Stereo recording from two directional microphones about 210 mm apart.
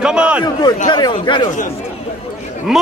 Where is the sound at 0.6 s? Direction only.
20° left (ahead or behind).